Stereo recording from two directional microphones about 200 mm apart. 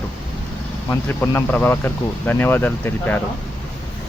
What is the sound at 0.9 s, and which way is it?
Speech, 10° left (ahead or behind).